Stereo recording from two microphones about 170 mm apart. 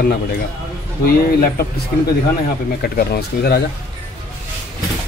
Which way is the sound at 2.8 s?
65° left (ahead or behind).